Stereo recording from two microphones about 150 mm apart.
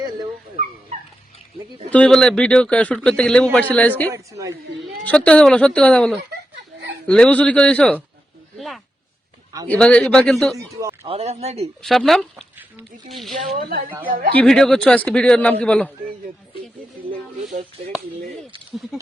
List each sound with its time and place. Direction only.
1.9 s speech: 5° left (ahead or behind)
4.1 s a woman's voice: 20° right (ahead or behind)
5.0 s a woman's voice: 10° left (ahead or behind)
8.5 s a sound: centre (ahead or behind)
9.6 s a woman's voice: 5° left (ahead or behind)
10.6 s a woman's voice: 20° right (ahead or behind)
11.0 s speech: 40° right (ahead or behind)
11.8 s a woman's voice: centre (ahead or behind)
13.6 s speech: 75° right (ahead or behind)
14.3 s speech: 5° left (ahead or behind)